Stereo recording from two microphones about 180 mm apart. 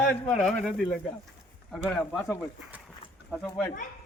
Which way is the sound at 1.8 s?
10° left (ahead or behind).